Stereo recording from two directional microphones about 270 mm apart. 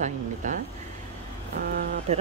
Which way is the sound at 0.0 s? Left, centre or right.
Right.